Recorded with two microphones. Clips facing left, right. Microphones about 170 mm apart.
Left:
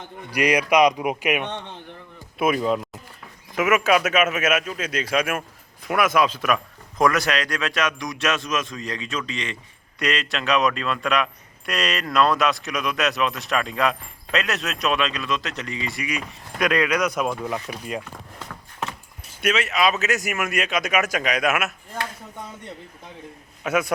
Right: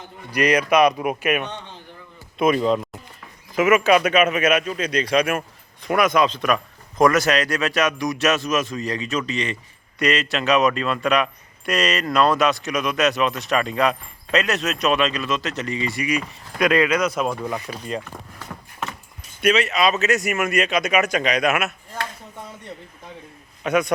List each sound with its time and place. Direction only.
0.3 s speech: 10° left (ahead or behind)
18.5 s a sound: 25° right (ahead or behind)
19.4 s speech: centre (ahead or behind)
23.6 s speech: 5° left (ahead or behind)